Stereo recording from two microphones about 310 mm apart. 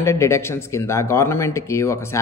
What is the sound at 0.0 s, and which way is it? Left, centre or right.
Speech, centre.